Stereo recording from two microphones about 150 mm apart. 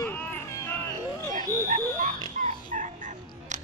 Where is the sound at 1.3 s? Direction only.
60° right (ahead or behind).